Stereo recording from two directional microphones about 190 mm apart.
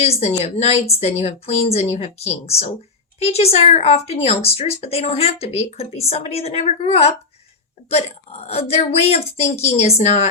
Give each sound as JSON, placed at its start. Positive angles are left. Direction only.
{"t": 0.0, "sound": "speech", "side_deg": 35}
{"t": 7.9, "sound": "speech", "side_deg": 35}
{"t": 9.4, "sound": "a woman's voice", "side_deg": 15}
{"t": 10.0, "sound": "speech", "side_deg": 40}